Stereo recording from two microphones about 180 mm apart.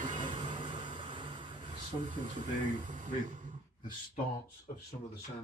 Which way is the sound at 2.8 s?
45° right (ahead or behind).